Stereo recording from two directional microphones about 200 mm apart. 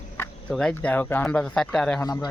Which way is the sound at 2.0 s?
15° left (ahead or behind).